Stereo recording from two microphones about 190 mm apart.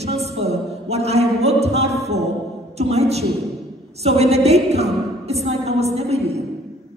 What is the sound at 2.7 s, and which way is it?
A woman's voice, 35° right (ahead or behind).